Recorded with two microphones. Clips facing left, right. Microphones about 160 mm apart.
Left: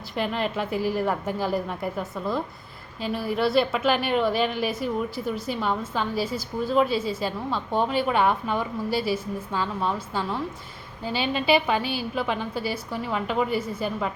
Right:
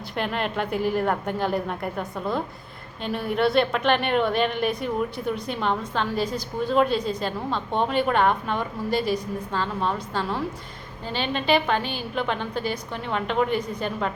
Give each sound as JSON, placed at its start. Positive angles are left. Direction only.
{"t": 0.2, "sound": "a woman's voice", "side_deg": 0}